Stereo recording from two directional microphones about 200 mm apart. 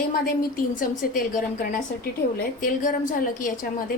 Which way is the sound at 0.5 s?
40° left (ahead or behind).